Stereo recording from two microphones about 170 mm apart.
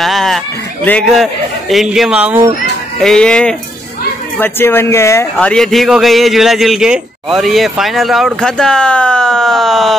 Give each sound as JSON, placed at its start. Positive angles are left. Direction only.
{"t": 0.0, "sound": "a sound", "side_deg": 0}
{"t": 0.8, "sound": "a man's voice", "side_deg": 5}
{"t": 3.0, "sound": "a man's voice", "side_deg": 5}
{"t": 5.5, "sound": "a man's voice", "side_deg": 0}